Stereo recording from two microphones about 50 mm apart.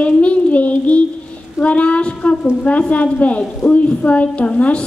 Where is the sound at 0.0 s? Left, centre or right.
Left.